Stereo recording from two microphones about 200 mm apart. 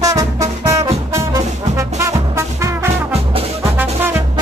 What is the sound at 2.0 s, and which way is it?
Music, 15° right (ahead or behind).